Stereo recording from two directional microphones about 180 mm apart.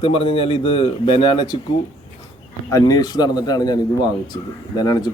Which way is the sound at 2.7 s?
20° left (ahead or behind).